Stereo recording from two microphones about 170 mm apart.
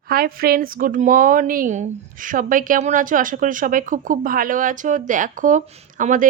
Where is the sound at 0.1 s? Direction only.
60° right (ahead or behind).